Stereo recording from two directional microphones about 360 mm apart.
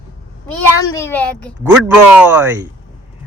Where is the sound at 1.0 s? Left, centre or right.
Centre.